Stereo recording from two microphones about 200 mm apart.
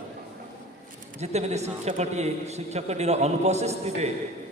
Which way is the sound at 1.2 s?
35° right (ahead or behind).